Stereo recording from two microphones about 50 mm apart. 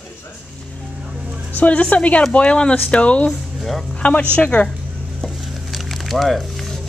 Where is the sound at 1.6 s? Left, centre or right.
Left.